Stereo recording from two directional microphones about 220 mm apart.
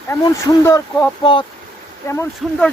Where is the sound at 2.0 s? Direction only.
10° left (ahead or behind).